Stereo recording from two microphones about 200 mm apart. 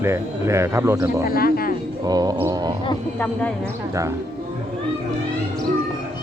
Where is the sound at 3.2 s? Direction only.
5° left (ahead or behind).